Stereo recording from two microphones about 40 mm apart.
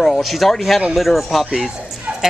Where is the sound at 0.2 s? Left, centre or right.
Centre.